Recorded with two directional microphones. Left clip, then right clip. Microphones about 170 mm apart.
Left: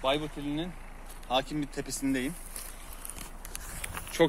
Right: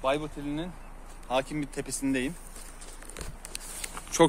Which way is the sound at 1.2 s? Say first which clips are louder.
Right 1 dB; 35° right (ahead or behind).